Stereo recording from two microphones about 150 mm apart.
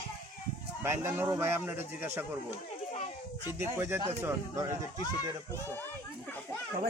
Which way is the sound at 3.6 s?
15° right (ahead or behind).